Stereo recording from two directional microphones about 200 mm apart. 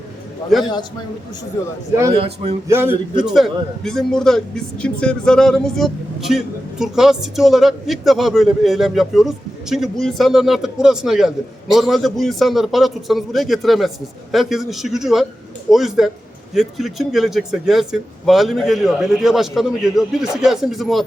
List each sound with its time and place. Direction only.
0.6 s a man's voice: 20° left (ahead or behind)
2.1 s a man's voice: 30° right (ahead or behind)
2.6 s a man's voice: 10° right (ahead or behind)
3.2 s a man's voice: centre (ahead or behind)